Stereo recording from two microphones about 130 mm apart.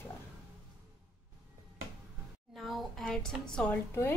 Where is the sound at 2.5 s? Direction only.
Centre (ahead or behind).